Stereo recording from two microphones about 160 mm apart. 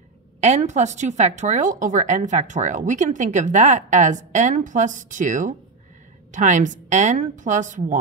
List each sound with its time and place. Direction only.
0.4 s a woman's voice: 45° right (ahead or behind)